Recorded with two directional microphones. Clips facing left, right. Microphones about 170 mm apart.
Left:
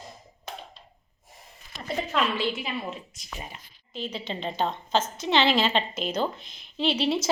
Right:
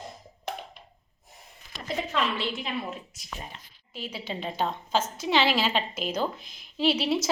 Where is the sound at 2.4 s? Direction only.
5° left (ahead or behind).